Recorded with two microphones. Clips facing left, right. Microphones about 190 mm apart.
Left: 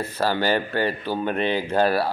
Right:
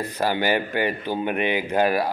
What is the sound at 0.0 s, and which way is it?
Speech, 15° right (ahead or behind).